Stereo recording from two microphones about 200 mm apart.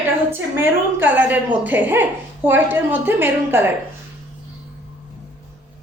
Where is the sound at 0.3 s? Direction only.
10° right (ahead or behind).